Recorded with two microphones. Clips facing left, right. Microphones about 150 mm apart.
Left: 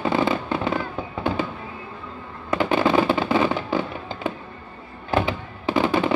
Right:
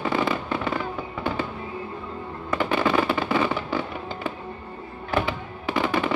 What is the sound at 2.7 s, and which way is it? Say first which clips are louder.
Fireworks: left 3 dB; 25° left (ahead or behind).